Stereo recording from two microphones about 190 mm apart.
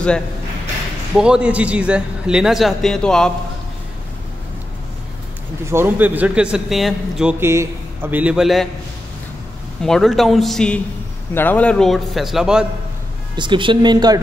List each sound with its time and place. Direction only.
1.1 s a man's voice: 5° right (ahead or behind)
5.7 s a man's voice: 10° right (ahead or behind)
9.8 s a man's voice: centre (ahead or behind)
13.4 s speech: 25° right (ahead or behind)